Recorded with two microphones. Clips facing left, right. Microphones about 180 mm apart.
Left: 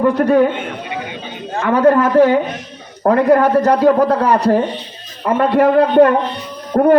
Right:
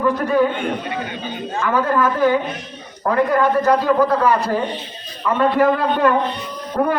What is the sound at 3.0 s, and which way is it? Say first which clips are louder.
Speech: left 6 dB; 50° left (ahead or behind).